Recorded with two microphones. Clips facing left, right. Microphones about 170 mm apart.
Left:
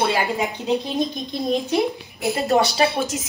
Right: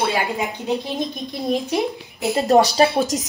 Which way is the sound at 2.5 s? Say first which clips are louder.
Right 4 dB; 40° right (ahead or behind).